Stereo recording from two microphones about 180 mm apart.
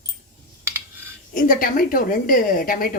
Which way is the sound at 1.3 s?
50° left (ahead or behind).